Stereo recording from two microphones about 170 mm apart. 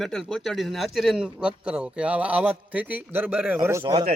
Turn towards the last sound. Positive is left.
turn(degrees=-20)  # may be behind; listen again after turning